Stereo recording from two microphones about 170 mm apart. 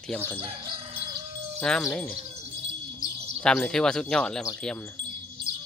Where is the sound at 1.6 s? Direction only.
5° left (ahead or behind).